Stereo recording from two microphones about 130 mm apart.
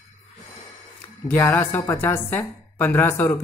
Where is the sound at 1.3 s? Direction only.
20° left (ahead or behind).